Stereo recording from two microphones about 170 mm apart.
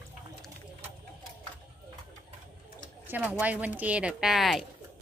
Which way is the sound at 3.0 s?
10° right (ahead or behind).